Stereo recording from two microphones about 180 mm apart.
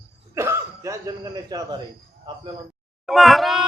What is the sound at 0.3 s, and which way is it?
Cough, 15° right (ahead or behind).